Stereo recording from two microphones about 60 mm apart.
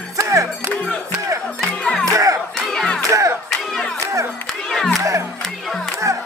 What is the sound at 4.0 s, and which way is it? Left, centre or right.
Music, right.